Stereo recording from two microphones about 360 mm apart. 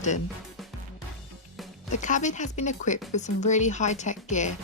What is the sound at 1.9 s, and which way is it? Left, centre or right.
A woman's voice, left.